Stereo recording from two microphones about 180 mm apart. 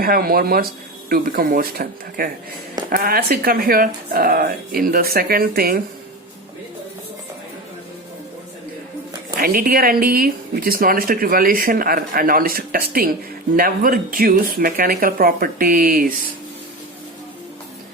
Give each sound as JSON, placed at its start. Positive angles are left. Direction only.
{"t": 0.0, "sound": "speech", "side_deg": -55}
{"t": 9.4, "sound": "speech", "side_deg": -55}